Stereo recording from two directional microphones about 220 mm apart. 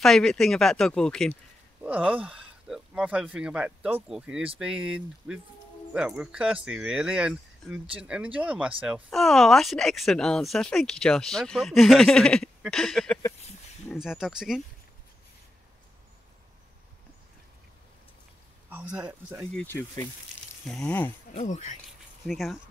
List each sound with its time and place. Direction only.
0.0 s a man's voice: centre (ahead or behind)
18.7 s speech: 10° right (ahead or behind)
19.5 s speech: 10° left (ahead or behind)
21.4 s speech: 35° left (ahead or behind)
22.2 s speech: centre (ahead or behind)